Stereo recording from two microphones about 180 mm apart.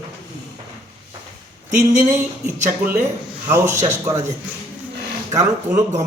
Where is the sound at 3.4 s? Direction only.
15° right (ahead or behind).